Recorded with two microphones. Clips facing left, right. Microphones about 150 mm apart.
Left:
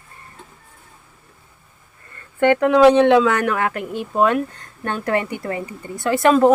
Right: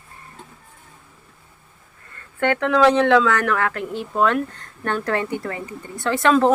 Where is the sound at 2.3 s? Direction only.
15° left (ahead or behind).